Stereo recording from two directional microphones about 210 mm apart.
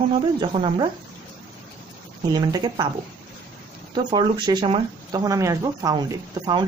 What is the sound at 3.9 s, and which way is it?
Speech, 20° right (ahead or behind).